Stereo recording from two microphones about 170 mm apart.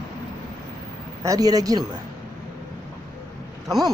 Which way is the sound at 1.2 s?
20° right (ahead or behind).